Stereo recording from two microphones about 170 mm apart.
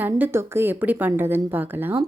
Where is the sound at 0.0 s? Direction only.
10° right (ahead or behind).